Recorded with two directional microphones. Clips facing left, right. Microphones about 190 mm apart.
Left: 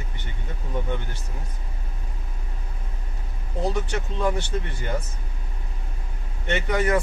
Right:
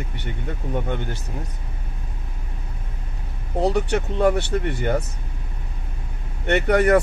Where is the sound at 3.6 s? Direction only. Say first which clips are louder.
Right 6 dB; 65° right (ahead or behind).